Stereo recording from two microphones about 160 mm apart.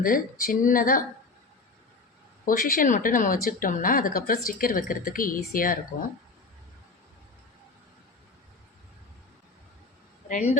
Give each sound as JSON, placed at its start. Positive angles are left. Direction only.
{"t": 0.0, "sound": "speech", "side_deg": 60}
{"t": 2.5, "sound": "speech", "side_deg": 60}
{"t": 10.2, "sound": "speech", "side_deg": 50}